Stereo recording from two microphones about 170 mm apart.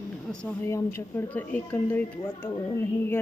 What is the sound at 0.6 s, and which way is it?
Speech, 15° left (ahead or behind).